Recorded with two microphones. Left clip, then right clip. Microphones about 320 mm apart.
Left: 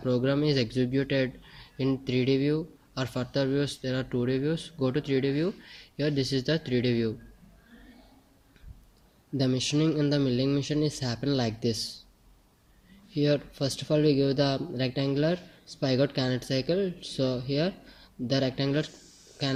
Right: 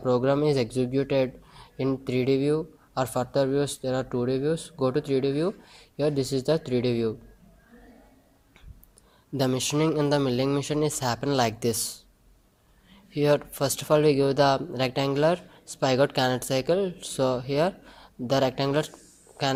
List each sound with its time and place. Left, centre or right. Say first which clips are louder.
0.0 s speech: right 4 dB; centre
9.4 s speech: right 2 dB; right
13.1 s speech: right 4 dB; right